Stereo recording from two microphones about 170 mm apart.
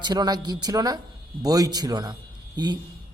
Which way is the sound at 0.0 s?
25° right (ahead or behind).